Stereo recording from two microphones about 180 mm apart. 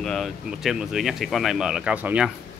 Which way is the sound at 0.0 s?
Centre (ahead or behind).